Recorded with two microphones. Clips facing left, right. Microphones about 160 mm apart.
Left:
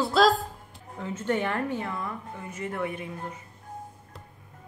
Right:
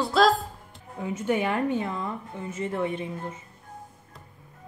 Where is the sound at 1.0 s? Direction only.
15° right (ahead or behind).